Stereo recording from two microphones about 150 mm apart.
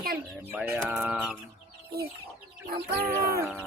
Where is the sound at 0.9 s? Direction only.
10° right (ahead or behind).